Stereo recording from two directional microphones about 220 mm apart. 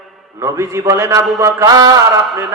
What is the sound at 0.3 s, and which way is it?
A man's voice, 15° right (ahead or behind).